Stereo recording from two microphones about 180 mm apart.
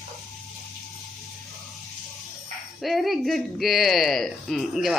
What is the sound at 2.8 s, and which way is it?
Speech, centre (ahead or behind).